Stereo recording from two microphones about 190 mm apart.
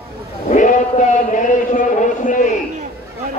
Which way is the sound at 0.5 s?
40° left (ahead or behind).